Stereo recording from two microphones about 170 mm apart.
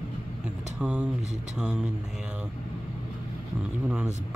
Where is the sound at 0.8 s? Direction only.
5° right (ahead or behind).